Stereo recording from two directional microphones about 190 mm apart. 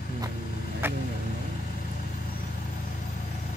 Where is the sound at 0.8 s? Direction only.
10° right (ahead or behind).